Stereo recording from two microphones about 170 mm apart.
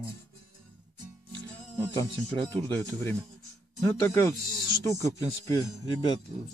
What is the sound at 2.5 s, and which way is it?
Speech, 10° left (ahead or behind).